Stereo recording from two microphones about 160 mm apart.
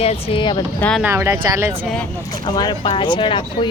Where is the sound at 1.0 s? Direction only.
15° right (ahead or behind).